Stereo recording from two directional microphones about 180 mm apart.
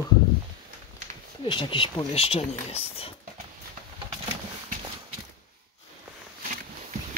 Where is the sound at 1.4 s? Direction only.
25° left (ahead or behind).